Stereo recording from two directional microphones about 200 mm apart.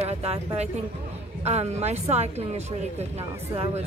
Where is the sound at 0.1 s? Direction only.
30° right (ahead or behind).